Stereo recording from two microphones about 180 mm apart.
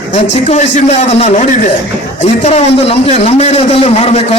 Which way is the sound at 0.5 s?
40° left (ahead or behind).